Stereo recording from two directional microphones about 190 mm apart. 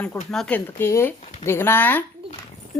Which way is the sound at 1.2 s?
35° left (ahead or behind).